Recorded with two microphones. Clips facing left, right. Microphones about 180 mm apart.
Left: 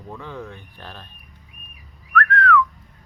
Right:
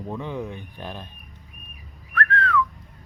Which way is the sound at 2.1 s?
30° right (ahead or behind).